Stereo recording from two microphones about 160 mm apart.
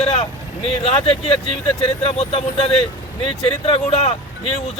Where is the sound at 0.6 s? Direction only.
35° left (ahead or behind).